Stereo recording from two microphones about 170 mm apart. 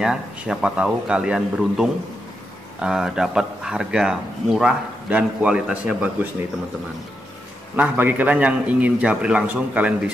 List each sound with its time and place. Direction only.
0.0 s a man's voice: 5° right (ahead or behind)
7.7 s a man's voice: 10° right (ahead or behind)